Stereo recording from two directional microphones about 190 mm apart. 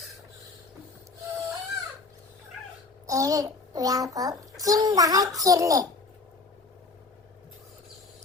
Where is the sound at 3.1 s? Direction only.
15° right (ahead or behind).